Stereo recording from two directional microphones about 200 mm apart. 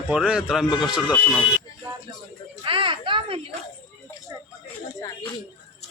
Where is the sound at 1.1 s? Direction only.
5° left (ahead or behind).